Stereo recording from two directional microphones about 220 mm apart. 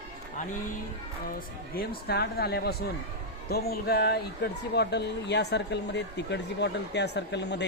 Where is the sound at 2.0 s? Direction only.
45° left (ahead or behind).